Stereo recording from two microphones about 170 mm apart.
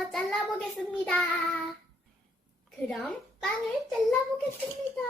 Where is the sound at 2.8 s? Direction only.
5° left (ahead or behind).